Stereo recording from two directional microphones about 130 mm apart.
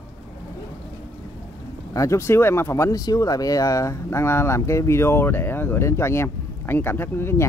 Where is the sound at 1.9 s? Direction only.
20° left (ahead or behind).